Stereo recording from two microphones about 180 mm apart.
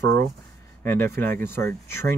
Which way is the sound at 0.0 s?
70° right (ahead or behind).